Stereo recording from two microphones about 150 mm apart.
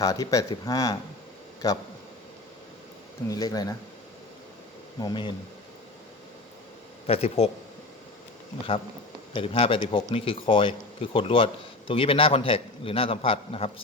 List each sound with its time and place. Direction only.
0.0 s speech: 25° left (ahead or behind)
3.2 s speech: 25° left (ahead or behind)
4.9 s speech: 30° left (ahead or behind)
7.1 s speech: 40° left (ahead or behind)
9.3 s speech: 40° left (ahead or behind)